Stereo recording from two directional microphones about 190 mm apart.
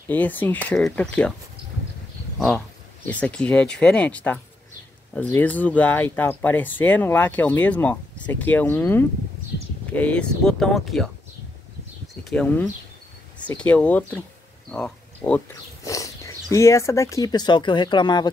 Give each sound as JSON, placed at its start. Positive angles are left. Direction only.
{"t": 0.1, "sound": "speech", "side_deg": 10}
{"t": 2.3, "sound": "speech", "side_deg": 0}
{"t": 12.3, "sound": "speech", "side_deg": 5}
{"t": 15.8, "sound": "speech", "side_deg": 15}